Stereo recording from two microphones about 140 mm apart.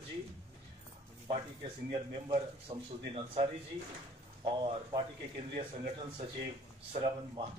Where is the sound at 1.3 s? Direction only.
40° right (ahead or behind).